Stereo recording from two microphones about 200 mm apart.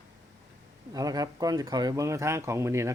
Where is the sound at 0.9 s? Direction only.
20° right (ahead or behind).